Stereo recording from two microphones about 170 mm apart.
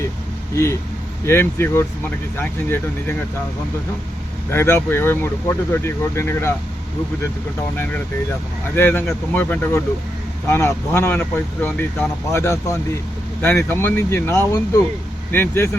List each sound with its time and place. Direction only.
0.5 s speech: 15° left (ahead or behind)
4.5 s speech: 15° left (ahead or behind)
8.7 s speech: 10° left (ahead or behind)